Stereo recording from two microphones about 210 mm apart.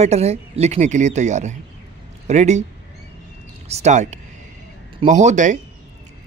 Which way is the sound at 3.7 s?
35° right (ahead or behind).